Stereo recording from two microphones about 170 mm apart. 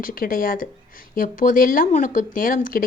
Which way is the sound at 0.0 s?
55° left (ahead or behind).